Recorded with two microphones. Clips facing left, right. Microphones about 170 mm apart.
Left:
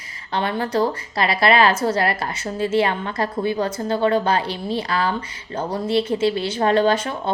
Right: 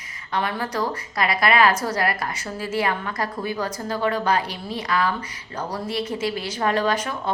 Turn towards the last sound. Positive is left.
turn(degrees=30)  # may be behind; listen again after turning